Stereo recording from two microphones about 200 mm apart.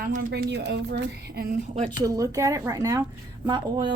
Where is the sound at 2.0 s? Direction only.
15° right (ahead or behind).